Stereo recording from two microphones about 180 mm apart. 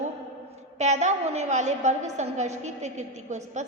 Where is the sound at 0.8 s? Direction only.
40° right (ahead or behind).